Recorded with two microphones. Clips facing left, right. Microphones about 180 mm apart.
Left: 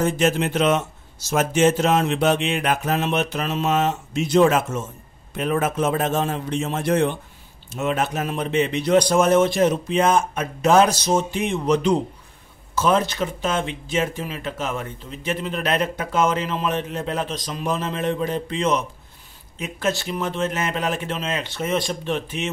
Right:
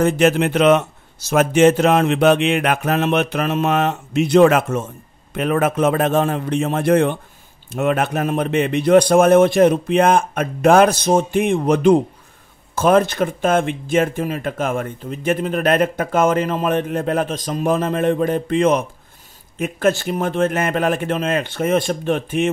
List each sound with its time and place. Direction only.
0.0 s speech: 65° right (ahead or behind)